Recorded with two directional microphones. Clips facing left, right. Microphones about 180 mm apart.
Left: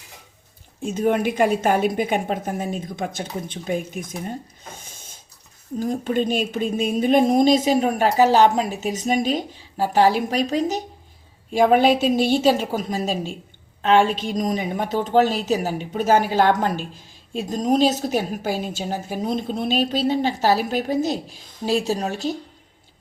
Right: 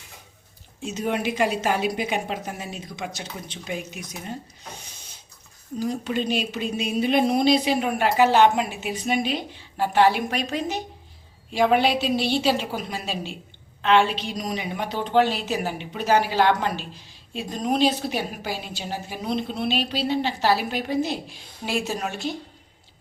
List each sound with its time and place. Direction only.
0.8 s a woman's voice: 55° left (ahead or behind); by 22.4 s 35° left (ahead or behind)